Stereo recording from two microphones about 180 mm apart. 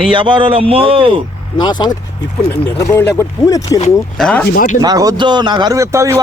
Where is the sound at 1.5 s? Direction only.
25° left (ahead or behind).